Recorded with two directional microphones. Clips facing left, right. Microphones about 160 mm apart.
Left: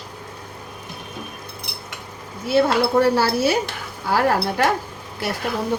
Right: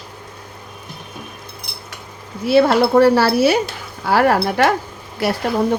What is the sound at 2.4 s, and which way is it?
Speech, 75° right (ahead or behind).